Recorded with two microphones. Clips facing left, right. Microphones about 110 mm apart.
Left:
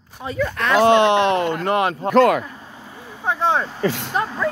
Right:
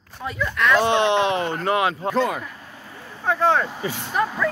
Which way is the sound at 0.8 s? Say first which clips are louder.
Left 8 dB; 85° left.